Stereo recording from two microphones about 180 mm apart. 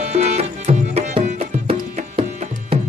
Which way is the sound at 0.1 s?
35° right (ahead or behind).